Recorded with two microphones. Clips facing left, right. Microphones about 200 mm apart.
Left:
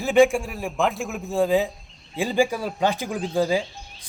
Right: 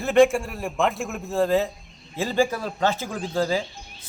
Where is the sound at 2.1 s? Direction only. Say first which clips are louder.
Left 1 dB; 15° left (ahead or behind).